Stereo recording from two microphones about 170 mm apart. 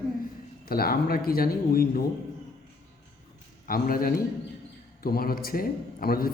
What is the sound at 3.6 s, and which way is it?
A man's voice, 60° left (ahead or behind).